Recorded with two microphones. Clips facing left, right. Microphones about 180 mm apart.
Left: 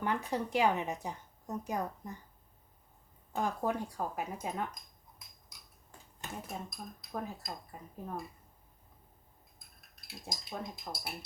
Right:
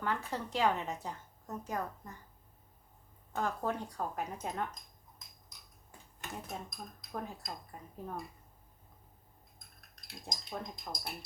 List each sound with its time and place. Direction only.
0.0 s a woman's voice: 15° left (ahead or behind)
3.3 s a woman's voice: 10° left (ahead or behind)
6.5 s speech: centre (ahead or behind)
9.6 s speech: 5° left (ahead or behind)